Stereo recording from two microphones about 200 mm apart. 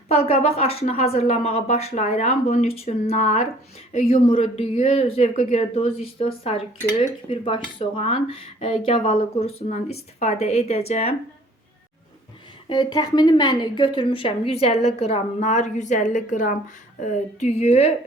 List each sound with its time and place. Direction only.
0.1 s speech: 30° left (ahead or behind)
12.6 s speech: 20° left (ahead or behind)